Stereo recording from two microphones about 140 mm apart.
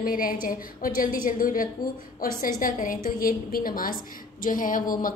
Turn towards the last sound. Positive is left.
turn(degrees=80)